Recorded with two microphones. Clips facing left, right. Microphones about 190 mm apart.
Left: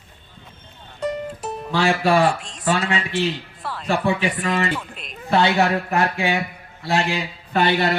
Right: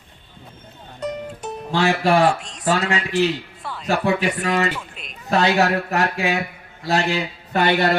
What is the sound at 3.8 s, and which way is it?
Speech, 40° right (ahead or behind).